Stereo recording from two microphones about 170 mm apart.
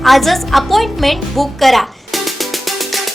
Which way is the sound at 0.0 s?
Centre (ahead or behind).